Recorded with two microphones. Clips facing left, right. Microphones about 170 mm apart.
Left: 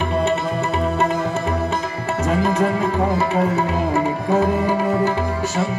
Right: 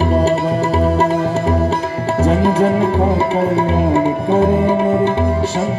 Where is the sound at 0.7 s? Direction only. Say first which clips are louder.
Right 4 dB; 35° right (ahead or behind).